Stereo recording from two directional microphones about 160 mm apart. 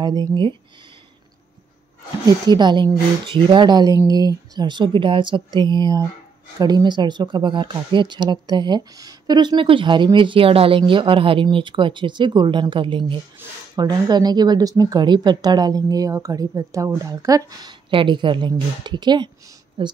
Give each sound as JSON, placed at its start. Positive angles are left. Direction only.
{"t": 0.0, "sound": "speech", "side_deg": -25}
{"t": 2.2, "sound": "speech", "side_deg": -25}